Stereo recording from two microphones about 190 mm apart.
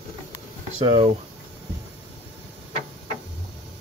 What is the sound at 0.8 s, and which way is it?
Speech, 25° right (ahead or behind).